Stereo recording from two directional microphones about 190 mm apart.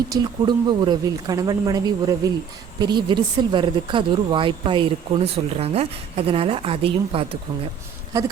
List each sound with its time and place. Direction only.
0.1 s speech: 20° right (ahead or behind)